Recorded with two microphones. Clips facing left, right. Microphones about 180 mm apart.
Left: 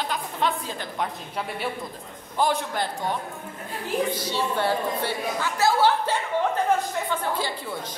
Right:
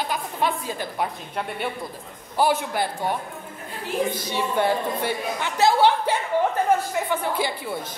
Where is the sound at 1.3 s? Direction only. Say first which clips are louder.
Right 1 dB; centre (ahead or behind).